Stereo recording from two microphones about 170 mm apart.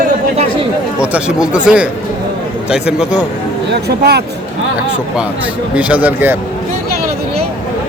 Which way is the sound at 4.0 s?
70° right (ahead or behind).